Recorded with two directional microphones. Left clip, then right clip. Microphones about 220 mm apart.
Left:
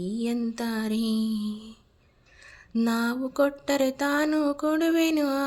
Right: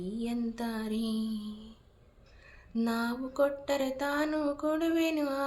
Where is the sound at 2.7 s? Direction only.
50° left (ahead or behind).